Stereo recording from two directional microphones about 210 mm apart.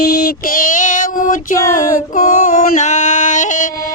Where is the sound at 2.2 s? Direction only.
40° left (ahead or behind).